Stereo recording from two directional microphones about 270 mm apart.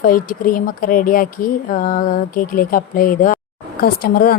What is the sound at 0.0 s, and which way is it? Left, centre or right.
A woman's voice, left.